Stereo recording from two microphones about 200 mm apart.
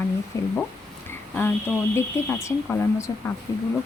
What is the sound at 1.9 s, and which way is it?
Speech, 15° left (ahead or behind).